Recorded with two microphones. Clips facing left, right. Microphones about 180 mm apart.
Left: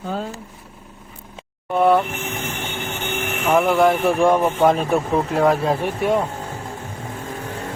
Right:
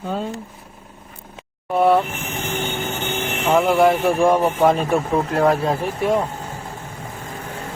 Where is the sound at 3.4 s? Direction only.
20° right (ahead or behind).